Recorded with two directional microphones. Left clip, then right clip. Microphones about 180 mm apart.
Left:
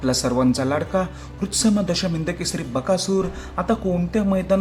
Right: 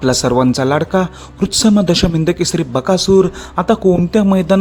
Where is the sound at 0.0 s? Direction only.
45° right (ahead or behind).